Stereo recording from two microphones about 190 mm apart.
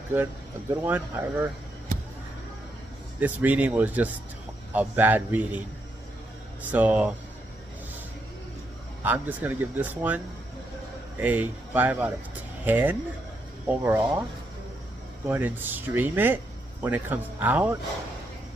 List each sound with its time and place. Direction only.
0.8 s speech: 10° right (ahead or behind)
3.2 s speech: 10° right (ahead or behind)
6.7 s speech: 10° right (ahead or behind)
9.0 s speech: 10° right (ahead or behind)
15.2 s speech: 10° right (ahead or behind)